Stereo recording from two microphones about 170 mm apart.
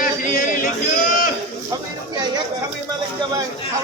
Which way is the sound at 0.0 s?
55° left (ahead or behind).